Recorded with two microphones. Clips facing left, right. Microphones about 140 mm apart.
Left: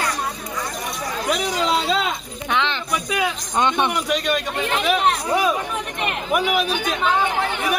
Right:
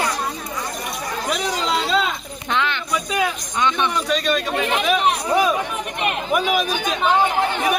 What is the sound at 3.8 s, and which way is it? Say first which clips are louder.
Speech: right 1 dB; 15° left (ahead or behind).